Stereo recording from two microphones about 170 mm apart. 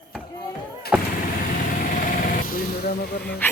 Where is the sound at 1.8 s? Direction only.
55° left (ahead or behind); by 3.4 s 70° left (ahead or behind).